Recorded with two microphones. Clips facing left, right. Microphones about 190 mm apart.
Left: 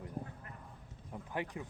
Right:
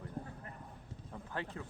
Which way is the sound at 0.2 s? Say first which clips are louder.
Left 1 dB; 20° left (ahead or behind).